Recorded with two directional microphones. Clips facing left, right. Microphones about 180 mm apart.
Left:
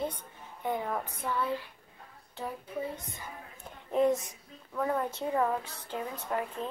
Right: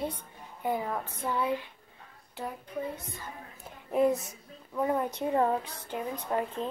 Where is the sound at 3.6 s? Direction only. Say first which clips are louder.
Right 1 dB; 5° right (ahead or behind).